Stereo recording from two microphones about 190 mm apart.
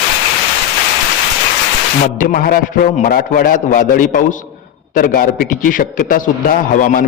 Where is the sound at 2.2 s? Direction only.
50° left (ahead or behind).